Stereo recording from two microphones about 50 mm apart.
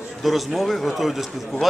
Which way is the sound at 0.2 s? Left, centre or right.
Centre.